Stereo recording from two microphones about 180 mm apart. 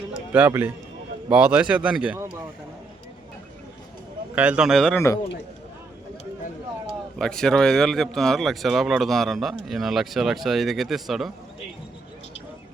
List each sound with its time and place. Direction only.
0.3 s speech: 10° right (ahead or behind)
4.4 s speech: 5° right (ahead or behind)
4.9 s a man's voice: 15° left (ahead or behind)
7.2 s speech: 5° left (ahead or behind)